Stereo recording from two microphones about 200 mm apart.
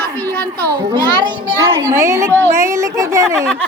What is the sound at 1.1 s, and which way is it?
A woman's voice, 20° right (ahead or behind).